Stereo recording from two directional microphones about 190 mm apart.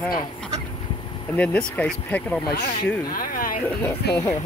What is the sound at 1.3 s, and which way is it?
Speech, 10° left (ahead or behind).